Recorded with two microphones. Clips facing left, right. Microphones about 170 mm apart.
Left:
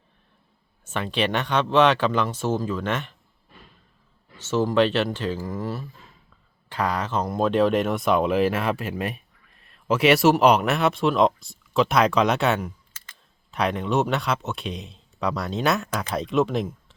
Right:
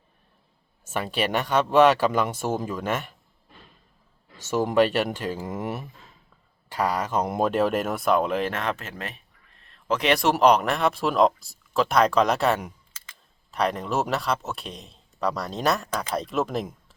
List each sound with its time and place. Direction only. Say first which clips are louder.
0.9 s speech: left 1 dB; 10° right (ahead or behind)
4.4 s speech: even; 10° right (ahead or behind)
6.7 s speech: even; 10° right (ahead or behind)